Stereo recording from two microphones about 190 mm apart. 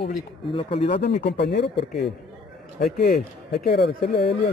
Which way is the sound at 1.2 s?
60° left (ahead or behind).